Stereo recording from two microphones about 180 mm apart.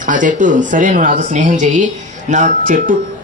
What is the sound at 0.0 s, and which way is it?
Speech, 45° right (ahead or behind).